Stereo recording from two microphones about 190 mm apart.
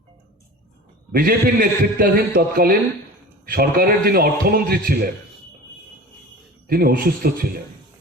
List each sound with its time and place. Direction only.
1.1 s a man's voice: 50° right (ahead or behind)
6.7 s a man's voice: 50° right (ahead or behind)